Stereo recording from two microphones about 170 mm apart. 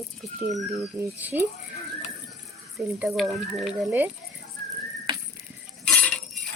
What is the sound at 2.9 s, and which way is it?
Speech, centre (ahead or behind).